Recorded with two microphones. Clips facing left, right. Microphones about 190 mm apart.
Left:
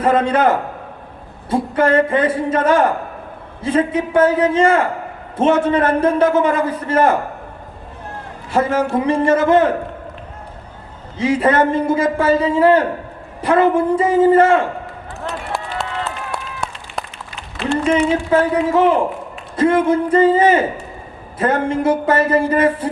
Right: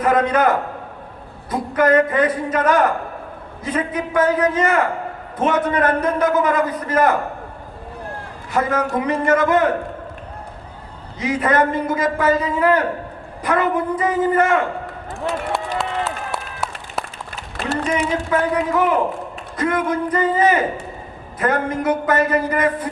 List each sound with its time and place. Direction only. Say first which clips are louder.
0.0 s a man's voice: left 2 dB; 30° left (ahead or behind)
8.5 s a man's voice: left 3 dB; 30° left (ahead or behind)
11.2 s a man's voice: left 3 dB; 30° left (ahead or behind)
15.8 s run: right 1 dB; centre (ahead or behind)
17.8 s a man's voice: left 7 dB; 30° left (ahead or behind)